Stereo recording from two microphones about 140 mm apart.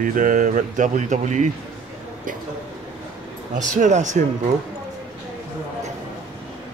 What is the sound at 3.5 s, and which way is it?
Speech, 60° right (ahead or behind).